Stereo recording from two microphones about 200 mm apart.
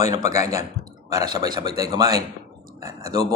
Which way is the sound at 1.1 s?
20° right (ahead or behind).